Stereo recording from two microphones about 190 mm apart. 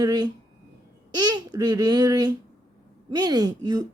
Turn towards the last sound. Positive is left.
turn(degrees=-20)  # may be behind; listen again after turning